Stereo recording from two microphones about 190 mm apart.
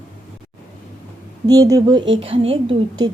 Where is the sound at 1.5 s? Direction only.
20° right (ahead or behind).